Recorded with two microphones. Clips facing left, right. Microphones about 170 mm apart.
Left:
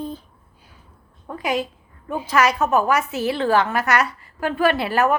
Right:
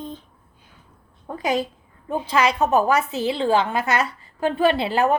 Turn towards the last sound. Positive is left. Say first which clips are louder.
# even
turn(degrees=-25)  # may be behind; listen again after turning